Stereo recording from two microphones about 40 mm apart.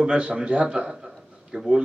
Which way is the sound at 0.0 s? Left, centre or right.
Right.